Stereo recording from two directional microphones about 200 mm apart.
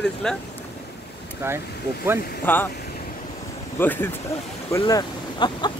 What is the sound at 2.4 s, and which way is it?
Speech, 10° left (ahead or behind).